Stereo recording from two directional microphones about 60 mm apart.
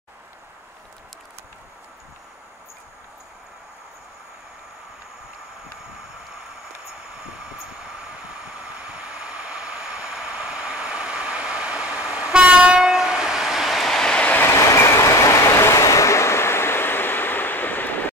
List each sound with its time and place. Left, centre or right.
8.7 s vehicle: centre
14.5 s vehicle: left